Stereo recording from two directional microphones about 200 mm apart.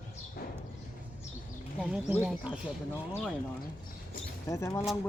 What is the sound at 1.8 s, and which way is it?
Speech, 5° right (ahead or behind).